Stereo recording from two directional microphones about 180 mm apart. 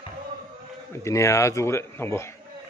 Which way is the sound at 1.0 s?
15° left (ahead or behind).